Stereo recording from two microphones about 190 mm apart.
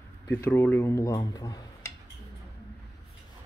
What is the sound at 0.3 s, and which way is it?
A man's voice, 10° left (ahead or behind).